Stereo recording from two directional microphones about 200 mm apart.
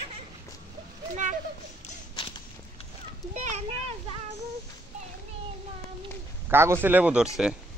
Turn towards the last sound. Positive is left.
turn(degrees=-5)  # may be behind; listen again after turning